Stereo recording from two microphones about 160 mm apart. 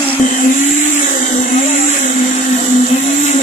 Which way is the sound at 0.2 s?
55° left (ahead or behind).